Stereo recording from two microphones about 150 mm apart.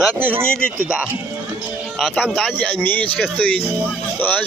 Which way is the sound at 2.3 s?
10° left (ahead or behind).